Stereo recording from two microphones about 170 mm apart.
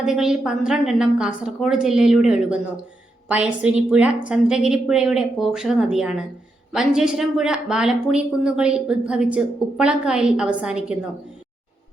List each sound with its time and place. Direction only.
0.0 s a woman's voice: 5° right (ahead or behind)